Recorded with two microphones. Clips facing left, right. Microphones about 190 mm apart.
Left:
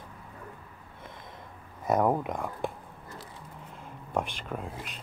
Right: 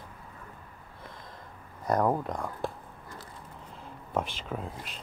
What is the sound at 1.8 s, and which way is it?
Speech, 5° left (ahead or behind).